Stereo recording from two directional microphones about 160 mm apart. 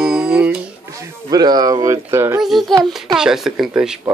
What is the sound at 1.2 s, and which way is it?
Speech, 25° right (ahead or behind).